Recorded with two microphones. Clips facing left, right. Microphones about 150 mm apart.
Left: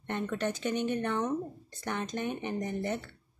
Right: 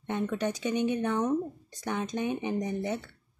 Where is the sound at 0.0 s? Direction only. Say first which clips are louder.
Right 2 dB; 10° right (ahead or behind).